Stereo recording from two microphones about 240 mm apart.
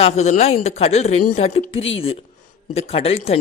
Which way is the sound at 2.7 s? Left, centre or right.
Left.